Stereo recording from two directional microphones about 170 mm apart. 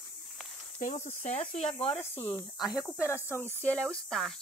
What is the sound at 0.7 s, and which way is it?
Speech, 45° left (ahead or behind).